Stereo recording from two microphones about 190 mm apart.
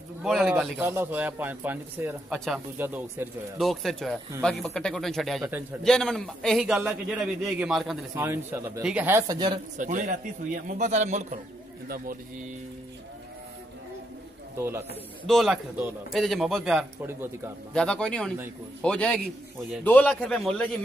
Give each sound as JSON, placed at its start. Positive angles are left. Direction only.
{"t": 0.2, "sound": "a man's voice", "side_deg": 0}
{"t": 2.3, "sound": "a man's voice", "side_deg": 0}
{"t": 2.8, "sound": "a man's voice", "side_deg": -10}
{"t": 3.5, "sound": "a man's voice", "side_deg": 0}
{"t": 8.1, "sound": "a man's voice", "side_deg": -10}
{"t": 9.8, "sound": "a man's voice", "side_deg": -40}
{"t": 14.6, "sound": "a man's voice", "side_deg": -10}
{"t": 15.2, "sound": "a man's voice", "side_deg": 0}